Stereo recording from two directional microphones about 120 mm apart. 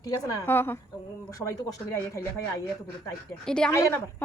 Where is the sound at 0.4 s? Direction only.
20° left (ahead or behind).